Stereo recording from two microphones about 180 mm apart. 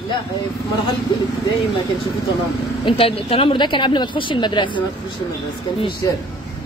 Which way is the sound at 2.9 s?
30° left (ahead or behind).